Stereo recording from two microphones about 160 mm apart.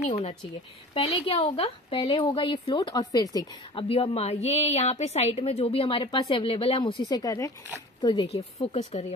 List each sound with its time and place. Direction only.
0.1 s a woman's voice: 45° left (ahead or behind); by 3.8 s 25° left (ahead or behind)
3.9 s a woman's voice: 40° left (ahead or behind)